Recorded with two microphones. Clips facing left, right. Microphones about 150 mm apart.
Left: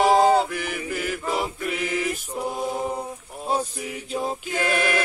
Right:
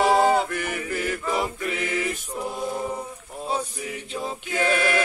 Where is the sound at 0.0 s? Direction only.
40° left (ahead or behind).